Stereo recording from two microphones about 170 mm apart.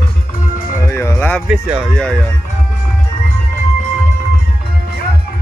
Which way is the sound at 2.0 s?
5° left (ahead or behind).